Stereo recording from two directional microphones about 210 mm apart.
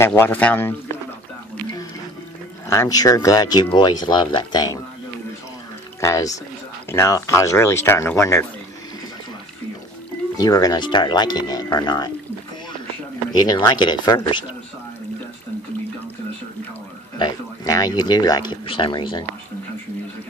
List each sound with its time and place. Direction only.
0.0 s speech: 10° left (ahead or behind)
2.7 s speech: 15° left (ahead or behind)
5.9 s speech: 15° left (ahead or behind)
10.3 s speech: 15° left (ahead or behind)
13.4 s speech: 20° left (ahead or behind)
17.2 s speech: 15° left (ahead or behind)